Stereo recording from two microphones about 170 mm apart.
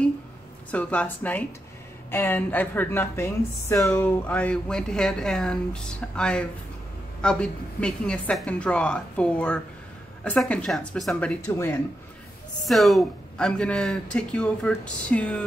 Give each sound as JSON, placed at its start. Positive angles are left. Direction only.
{"t": 0.7, "sound": "a woman's voice", "side_deg": 10}
{"t": 11.4, "sound": "speech", "side_deg": 20}
{"t": 12.6, "sound": "speech", "side_deg": 0}